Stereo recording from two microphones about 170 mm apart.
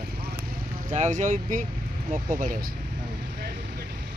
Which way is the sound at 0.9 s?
45° right (ahead or behind).